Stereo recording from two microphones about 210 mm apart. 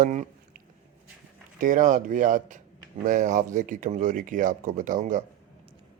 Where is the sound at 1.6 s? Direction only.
40° right (ahead or behind).